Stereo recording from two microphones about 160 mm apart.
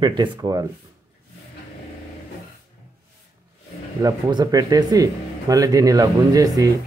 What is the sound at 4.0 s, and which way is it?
Speech, 25° right (ahead or behind).